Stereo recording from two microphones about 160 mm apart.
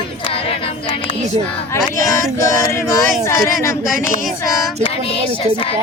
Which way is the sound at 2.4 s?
20° left (ahead or behind).